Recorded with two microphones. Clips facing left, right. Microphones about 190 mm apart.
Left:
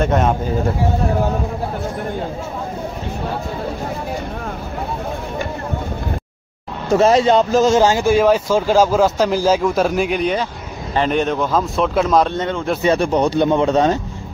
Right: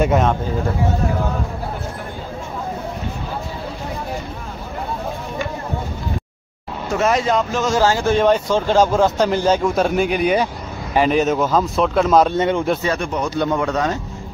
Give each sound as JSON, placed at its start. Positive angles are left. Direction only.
{"t": 0.0, "sound": "speech", "side_deg": -5}
{"t": 6.9, "sound": "speech", "side_deg": 30}
{"t": 7.8, "sound": "speech", "side_deg": 15}
{"t": 12.4, "sound": "a man's voice", "side_deg": -15}
{"t": 12.8, "sound": "speech", "side_deg": 30}